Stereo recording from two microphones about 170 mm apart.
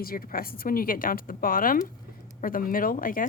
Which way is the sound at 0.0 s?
60° left (ahead or behind).